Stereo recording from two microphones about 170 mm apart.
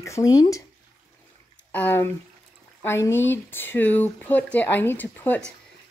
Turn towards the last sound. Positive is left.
turn(degrees=10)  # may be behind; listen again after turning